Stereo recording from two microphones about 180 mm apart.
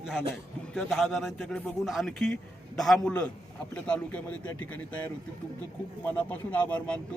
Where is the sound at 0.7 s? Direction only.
Centre (ahead or behind).